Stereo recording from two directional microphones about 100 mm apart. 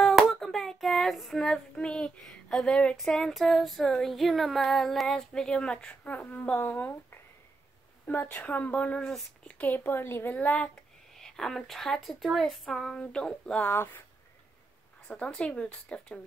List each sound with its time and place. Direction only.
0.0 s child singing: centre (ahead or behind); by 7.2 s 20° left (ahead or behind)
8.1 s speech: 15° left (ahead or behind)
11.1 s child singing: 5° left (ahead or behind)
13.0 s speech: 10° left (ahead or behind)
15.0 s speech: 10° left (ahead or behind)